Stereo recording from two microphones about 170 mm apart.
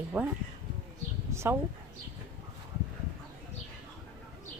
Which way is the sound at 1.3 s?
15° right (ahead or behind).